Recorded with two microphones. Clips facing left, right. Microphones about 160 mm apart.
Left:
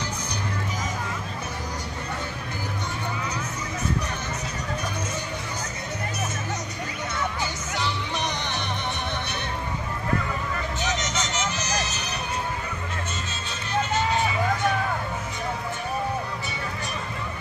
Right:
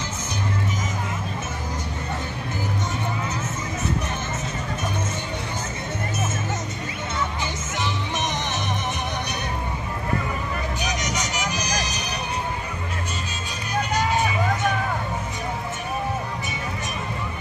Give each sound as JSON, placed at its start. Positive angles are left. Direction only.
{"t": 7.7, "sound": "music", "side_deg": -20}
{"t": 10.8, "sound": "music", "side_deg": -15}